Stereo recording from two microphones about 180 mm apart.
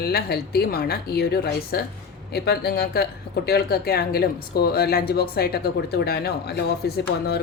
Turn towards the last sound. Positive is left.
turn(degrees=60)  # may be behind; listen again after turning